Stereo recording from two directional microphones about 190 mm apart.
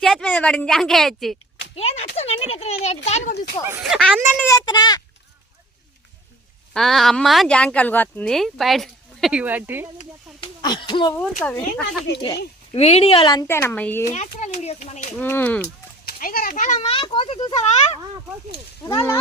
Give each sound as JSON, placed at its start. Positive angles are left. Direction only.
{"t": 0.0, "sound": "speech", "side_deg": 0}
{"t": 1.7, "sound": "a child's voice", "side_deg": 30}
{"t": 3.7, "sound": "speech", "side_deg": -5}
{"t": 4.4, "sound": "speech", "side_deg": 20}
{"t": 6.7, "sound": "speech", "side_deg": 0}
{"t": 10.4, "sound": "a sound", "side_deg": 25}
{"t": 11.2, "sound": "speech", "side_deg": 5}
{"t": 12.7, "sound": "a child's voice", "side_deg": 35}
{"t": 13.5, "sound": "speech", "side_deg": 15}
{"t": 14.1, "sound": "a child's voice", "side_deg": 40}
{"t": 15.2, "sound": "speech", "side_deg": 10}
{"t": 16.0, "sound": "a child's voice", "side_deg": 45}
{"t": 18.9, "sound": "speech", "side_deg": 15}